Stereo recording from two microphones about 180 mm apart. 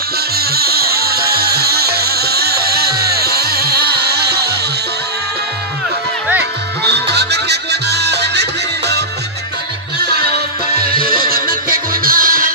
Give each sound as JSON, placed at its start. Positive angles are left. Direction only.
{"t": 0.4, "sound": "music", "side_deg": -60}
{"t": 6.8, "sound": "music", "side_deg": -65}
{"t": 10.0, "sound": "music", "side_deg": 30}
{"t": 10.9, "sound": "music", "side_deg": -55}